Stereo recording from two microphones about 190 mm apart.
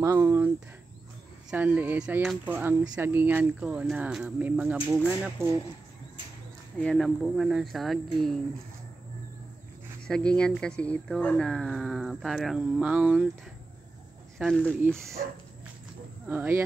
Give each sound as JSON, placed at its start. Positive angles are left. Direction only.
{"t": 0.0, "sound": "speech", "side_deg": -15}
{"t": 1.5, "sound": "speech", "side_deg": -10}
{"t": 6.8, "sound": "speech", "side_deg": 5}
{"t": 10.0, "sound": "speech", "side_deg": 5}
{"t": 14.4, "sound": "speech", "side_deg": 5}
{"t": 15.2, "sound": "dog", "side_deg": -50}
{"t": 16.3, "sound": "speech", "side_deg": -10}